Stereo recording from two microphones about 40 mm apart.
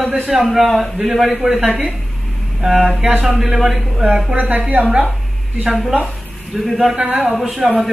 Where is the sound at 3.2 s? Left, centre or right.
Centre.